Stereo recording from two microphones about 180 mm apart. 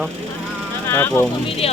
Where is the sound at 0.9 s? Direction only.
10° left (ahead or behind).